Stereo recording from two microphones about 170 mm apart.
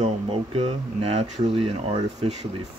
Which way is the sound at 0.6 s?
35° right (ahead or behind).